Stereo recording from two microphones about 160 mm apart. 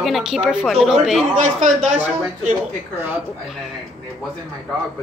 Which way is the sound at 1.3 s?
50° right (ahead or behind).